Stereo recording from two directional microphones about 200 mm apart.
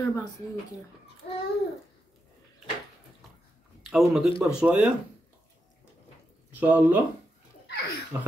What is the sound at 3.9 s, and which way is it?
Speech, centre (ahead or behind).